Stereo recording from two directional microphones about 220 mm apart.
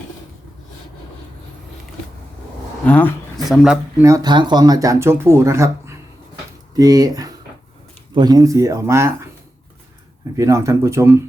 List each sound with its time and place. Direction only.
2.8 s speech: 5° left (ahead or behind)
4.0 s speech: 15° right (ahead or behind)
10.3 s speech: 15° right (ahead or behind)